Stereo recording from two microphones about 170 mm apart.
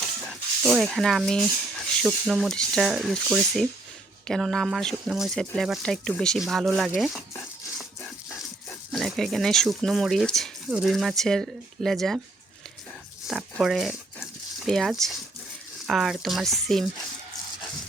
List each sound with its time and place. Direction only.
0.3 s speech: centre (ahead or behind)
7.8 s dog: centre (ahead or behind)
8.9 s speech: centre (ahead or behind)
13.2 s a sound: centre (ahead or behind)
15.9 s speech: centre (ahead or behind)